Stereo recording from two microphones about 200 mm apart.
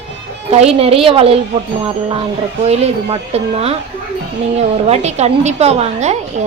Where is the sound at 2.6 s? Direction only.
30° right (ahead or behind).